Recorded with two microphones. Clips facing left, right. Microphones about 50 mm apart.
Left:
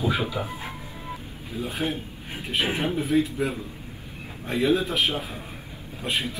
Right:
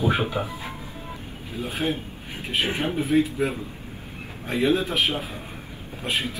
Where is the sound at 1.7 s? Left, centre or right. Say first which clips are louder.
Right 3 dB; centre.